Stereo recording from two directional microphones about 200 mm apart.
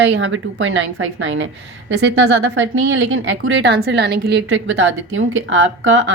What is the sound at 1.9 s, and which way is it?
Speech, 60° right (ahead or behind).